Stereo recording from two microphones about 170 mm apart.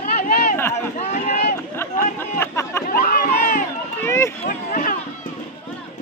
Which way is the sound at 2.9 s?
60° left (ahead or behind).